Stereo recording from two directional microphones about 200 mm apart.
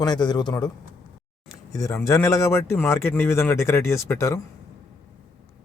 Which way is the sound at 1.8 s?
15° left (ahead or behind).